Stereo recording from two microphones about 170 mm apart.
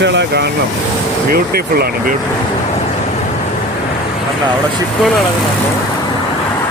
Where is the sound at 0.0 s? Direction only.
90° right.